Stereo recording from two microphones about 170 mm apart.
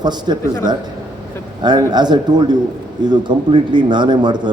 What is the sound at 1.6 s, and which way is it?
A man's voice, 25° right (ahead or behind).